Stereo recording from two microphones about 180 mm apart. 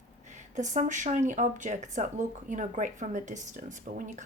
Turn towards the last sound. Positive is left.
turn(degrees=-45)  # may be behind; listen again after turning